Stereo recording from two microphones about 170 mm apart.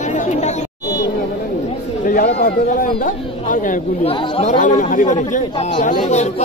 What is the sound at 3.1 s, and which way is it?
Speech, 50° left (ahead or behind).